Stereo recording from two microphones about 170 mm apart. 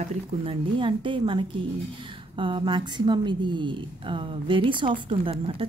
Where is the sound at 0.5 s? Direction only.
30° right (ahead or behind).